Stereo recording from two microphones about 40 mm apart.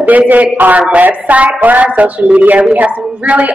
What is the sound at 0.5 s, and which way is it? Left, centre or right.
A woman's voice, right.